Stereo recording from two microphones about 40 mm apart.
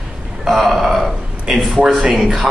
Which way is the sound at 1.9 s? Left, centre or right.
Right.